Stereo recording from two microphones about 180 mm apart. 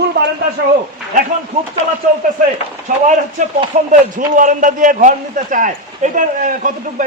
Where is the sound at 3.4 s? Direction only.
45° right (ahead or behind).